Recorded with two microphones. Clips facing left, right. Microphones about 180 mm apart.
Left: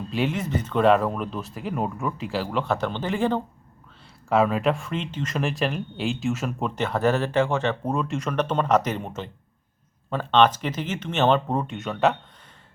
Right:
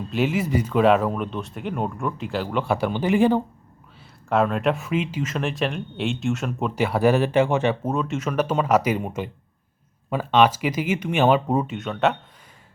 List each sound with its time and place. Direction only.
0.1 s speech: centre (ahead or behind)
4.3 s speech: centre (ahead or behind); by 7.8 s 15° right (ahead or behind)
7.9 s speech: centre (ahead or behind)